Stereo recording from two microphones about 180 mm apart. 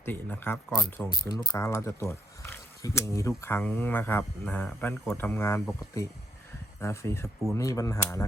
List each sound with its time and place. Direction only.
0.0 s speech: 10° left (ahead or behind)